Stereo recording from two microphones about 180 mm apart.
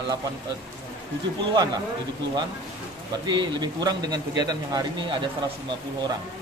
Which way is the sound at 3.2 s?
25° right (ahead or behind).